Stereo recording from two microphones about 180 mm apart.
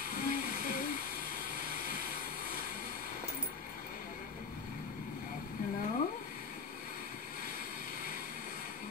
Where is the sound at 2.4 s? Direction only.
55° left (ahead or behind).